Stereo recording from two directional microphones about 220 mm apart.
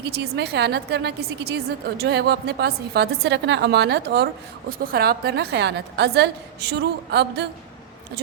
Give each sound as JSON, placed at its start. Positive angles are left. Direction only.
{"t": 0.0, "sound": "a woman's voice", "side_deg": -50}